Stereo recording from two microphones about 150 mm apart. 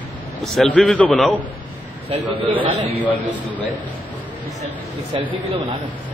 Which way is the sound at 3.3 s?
10° left (ahead or behind).